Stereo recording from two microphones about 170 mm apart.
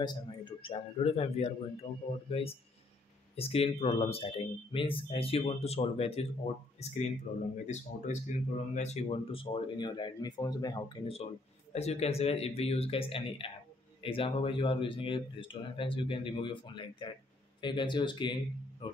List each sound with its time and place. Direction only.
0.0 s speech: 25° left (ahead or behind)
11.7 s speech: 40° left (ahead or behind)